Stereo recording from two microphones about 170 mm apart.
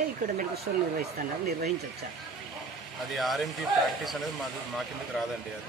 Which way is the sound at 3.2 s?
Centre (ahead or behind).